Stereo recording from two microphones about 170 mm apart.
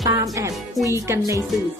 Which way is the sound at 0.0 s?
20° right (ahead or behind).